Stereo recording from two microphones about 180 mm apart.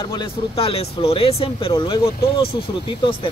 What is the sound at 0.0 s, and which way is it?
Speech, 25° left (ahead or behind).